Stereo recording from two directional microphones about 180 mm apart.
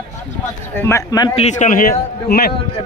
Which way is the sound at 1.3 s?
40° left (ahead or behind).